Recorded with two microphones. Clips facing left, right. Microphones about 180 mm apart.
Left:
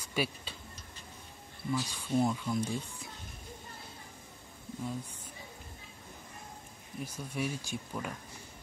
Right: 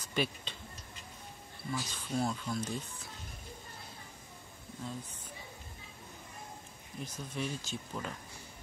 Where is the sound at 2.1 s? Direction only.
25° left (ahead or behind).